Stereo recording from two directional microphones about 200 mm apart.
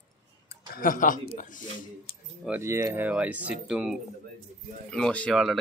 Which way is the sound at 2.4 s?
10° right (ahead or behind).